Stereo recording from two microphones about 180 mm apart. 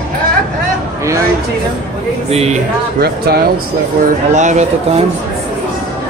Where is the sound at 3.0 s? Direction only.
60° right (ahead or behind).